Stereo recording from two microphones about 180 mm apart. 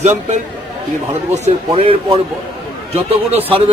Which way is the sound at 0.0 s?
40° right (ahead or behind).